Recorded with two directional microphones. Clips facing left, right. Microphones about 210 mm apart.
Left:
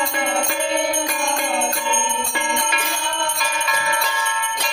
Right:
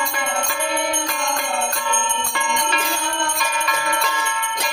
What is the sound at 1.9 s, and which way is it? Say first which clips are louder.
Jingle bell: left 1 dB; 10° left (ahead or behind).